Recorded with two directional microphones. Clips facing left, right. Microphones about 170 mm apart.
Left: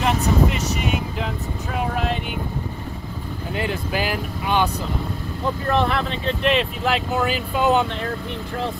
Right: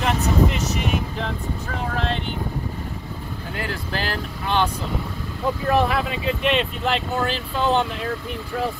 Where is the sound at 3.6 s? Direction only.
15° left (ahead or behind).